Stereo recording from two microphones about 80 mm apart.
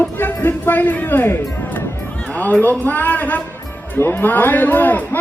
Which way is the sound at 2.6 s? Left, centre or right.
Left.